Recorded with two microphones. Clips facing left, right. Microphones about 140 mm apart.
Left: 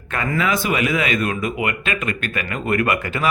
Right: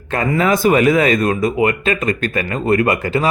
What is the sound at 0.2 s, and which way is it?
Speech, 40° right (ahead or behind).